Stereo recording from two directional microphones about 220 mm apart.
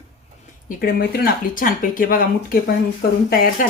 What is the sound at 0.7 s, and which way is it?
Speech, 40° left (ahead or behind).